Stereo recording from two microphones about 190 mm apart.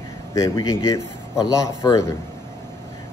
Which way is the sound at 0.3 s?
15° left (ahead or behind).